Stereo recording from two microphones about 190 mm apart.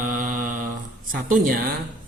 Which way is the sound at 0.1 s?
45° right (ahead or behind).